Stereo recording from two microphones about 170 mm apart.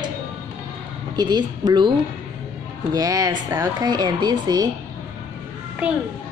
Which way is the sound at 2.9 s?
20° right (ahead or behind).